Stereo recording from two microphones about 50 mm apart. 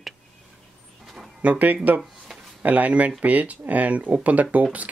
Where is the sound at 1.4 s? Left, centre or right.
Right.